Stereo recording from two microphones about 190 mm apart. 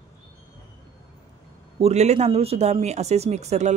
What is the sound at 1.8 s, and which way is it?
Speech, 35° right (ahead or behind).